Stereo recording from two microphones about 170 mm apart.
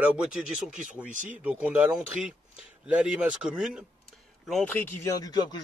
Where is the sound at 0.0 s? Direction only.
5° right (ahead or behind).